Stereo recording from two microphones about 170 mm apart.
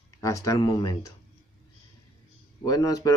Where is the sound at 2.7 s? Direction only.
20° left (ahead or behind).